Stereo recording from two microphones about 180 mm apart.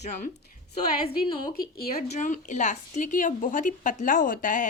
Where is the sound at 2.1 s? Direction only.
40° left (ahead or behind).